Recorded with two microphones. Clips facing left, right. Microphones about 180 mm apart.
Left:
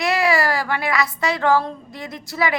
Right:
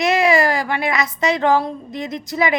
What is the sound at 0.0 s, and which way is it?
A woman's voice, 20° right (ahead or behind).